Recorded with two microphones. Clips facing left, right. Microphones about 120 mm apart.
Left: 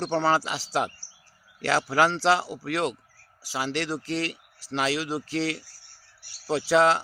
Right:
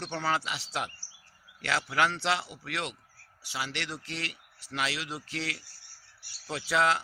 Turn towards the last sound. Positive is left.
turn(degrees=30)  # may be behind; listen again after turning